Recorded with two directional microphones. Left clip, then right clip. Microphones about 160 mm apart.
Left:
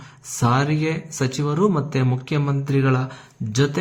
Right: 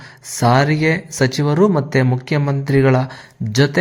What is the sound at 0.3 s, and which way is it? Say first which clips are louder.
Speech: right 6 dB; 30° right (ahead or behind).